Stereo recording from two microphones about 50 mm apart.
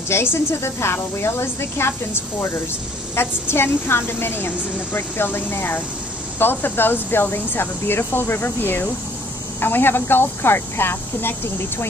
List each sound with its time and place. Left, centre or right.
0.1 s a woman's voice: left